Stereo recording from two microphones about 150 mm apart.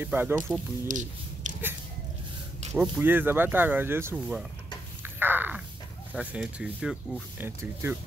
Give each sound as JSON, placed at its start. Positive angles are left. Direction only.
{"t": 0.0, "sound": "speech", "side_deg": -15}
{"t": 0.8, "sound": "a sound", "side_deg": -55}
{"t": 2.7, "sound": "speech", "side_deg": -10}
{"t": 5.0, "sound": "a sound", "side_deg": -15}
{"t": 6.1, "sound": "speech", "side_deg": -5}
{"t": 7.3, "sound": "speech", "side_deg": -15}